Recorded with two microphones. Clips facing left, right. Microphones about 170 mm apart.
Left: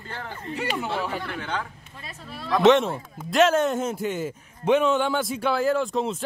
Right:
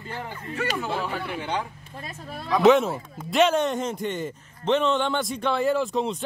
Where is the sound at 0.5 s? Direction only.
20° left (ahead or behind).